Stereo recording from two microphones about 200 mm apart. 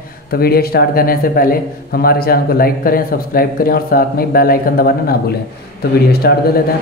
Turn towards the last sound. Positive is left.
turn(degrees=50)  # may be behind; listen again after turning